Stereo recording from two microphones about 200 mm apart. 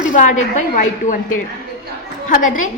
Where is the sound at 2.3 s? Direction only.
40° left (ahead or behind).